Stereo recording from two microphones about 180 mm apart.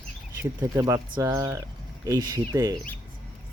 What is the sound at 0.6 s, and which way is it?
Speech, 15° right (ahead or behind).